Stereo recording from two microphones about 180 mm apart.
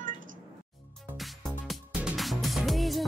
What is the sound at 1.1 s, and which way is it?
Music, centre (ahead or behind).